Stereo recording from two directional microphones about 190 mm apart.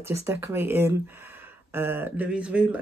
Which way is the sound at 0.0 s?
15° right (ahead or behind).